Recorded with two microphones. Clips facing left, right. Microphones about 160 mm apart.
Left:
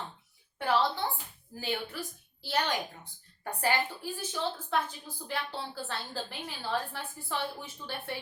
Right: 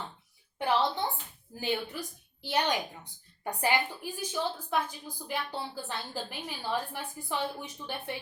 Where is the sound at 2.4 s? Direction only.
15° right (ahead or behind).